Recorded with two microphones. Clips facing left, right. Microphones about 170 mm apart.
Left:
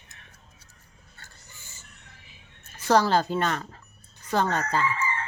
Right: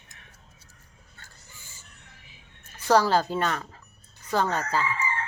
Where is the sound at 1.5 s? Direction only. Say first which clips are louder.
Even; 10° right (ahead or behind).